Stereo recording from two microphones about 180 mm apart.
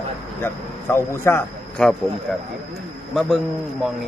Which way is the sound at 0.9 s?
15° left (ahead or behind).